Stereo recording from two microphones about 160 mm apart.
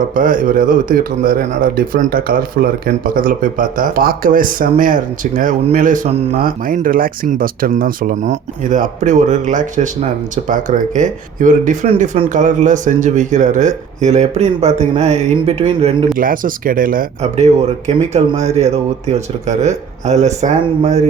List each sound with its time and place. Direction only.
0.1 s speech: 55° right (ahead or behind); by 16.0 s 35° right (ahead or behind)
16.1 s speech: 60° right (ahead or behind)
17.3 s speech: 45° right (ahead or behind)